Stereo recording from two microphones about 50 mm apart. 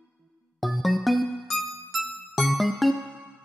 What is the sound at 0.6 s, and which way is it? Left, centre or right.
Music, centre.